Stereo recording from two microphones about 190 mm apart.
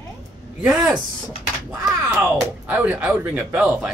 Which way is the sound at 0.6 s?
5° right (ahead or behind).